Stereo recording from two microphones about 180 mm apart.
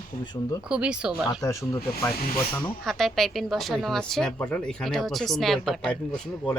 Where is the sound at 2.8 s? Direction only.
Centre (ahead or behind).